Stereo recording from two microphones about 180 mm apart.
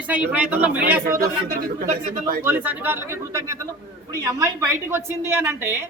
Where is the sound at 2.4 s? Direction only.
10° right (ahead or behind).